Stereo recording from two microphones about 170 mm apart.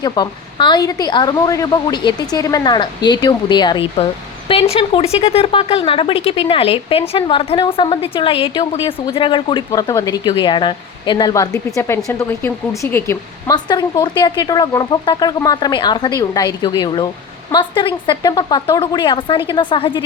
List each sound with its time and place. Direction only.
0.0 s a woman's voice: 25° left (ahead or behind)